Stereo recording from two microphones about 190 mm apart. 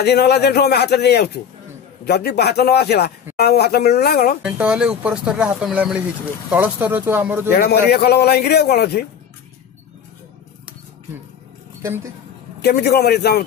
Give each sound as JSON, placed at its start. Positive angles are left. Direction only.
{"t": 0.0, "sound": "a man's voice", "side_deg": 60}
{"t": 4.4, "sound": "speech", "side_deg": -5}
{"t": 7.5, "sound": "a man's voice", "side_deg": 55}
{"t": 12.6, "sound": "a man's voice", "side_deg": 60}